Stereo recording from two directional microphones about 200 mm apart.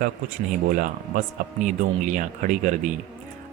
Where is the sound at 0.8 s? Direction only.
40° right (ahead or behind).